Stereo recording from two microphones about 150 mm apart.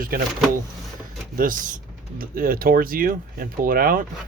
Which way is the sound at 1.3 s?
65° right (ahead or behind).